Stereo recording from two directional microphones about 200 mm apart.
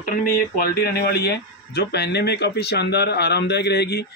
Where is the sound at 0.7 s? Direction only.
50° left (ahead or behind).